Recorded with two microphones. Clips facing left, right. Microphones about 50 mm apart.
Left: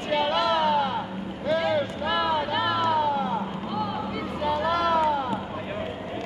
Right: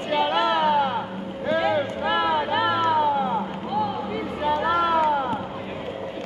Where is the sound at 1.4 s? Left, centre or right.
Right.